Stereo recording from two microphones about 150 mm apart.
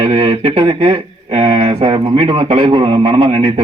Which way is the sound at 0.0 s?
40° right (ahead or behind).